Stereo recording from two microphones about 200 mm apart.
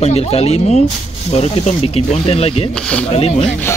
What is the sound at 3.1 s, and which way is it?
Speech, 30° left (ahead or behind).